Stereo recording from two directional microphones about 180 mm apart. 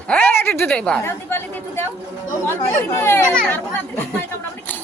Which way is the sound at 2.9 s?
15° left (ahead or behind).